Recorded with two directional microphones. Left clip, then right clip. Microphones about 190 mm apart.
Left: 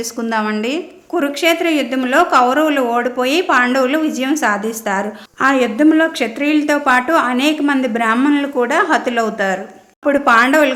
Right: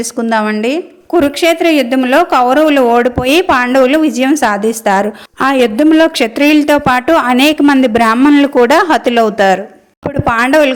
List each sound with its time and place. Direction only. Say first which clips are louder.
0.2 s a woman's voice: right 6 dB; 35° right (ahead or behind)